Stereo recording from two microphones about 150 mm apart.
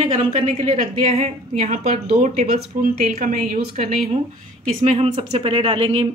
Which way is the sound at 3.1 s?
65° right (ahead or behind).